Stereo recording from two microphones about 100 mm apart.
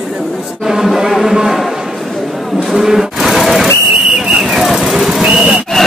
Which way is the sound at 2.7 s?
5° right (ahead or behind).